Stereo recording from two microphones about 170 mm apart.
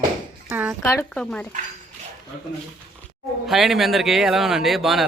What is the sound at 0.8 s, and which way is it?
Wail, 10° left (ahead or behind).